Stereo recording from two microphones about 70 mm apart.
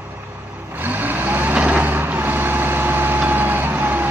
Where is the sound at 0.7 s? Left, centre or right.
Right.